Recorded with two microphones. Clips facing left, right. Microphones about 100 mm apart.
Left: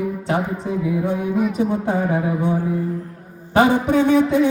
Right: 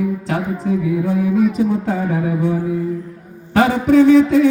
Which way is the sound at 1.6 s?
20° left (ahead or behind).